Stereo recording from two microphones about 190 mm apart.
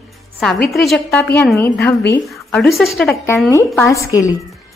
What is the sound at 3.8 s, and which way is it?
Speech, 15° left (ahead or behind).